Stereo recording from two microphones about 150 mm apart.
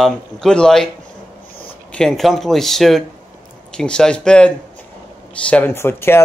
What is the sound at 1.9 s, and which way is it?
Speech, 5° left (ahead or behind).